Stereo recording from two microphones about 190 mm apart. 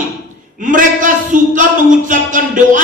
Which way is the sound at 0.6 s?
45° right (ahead or behind).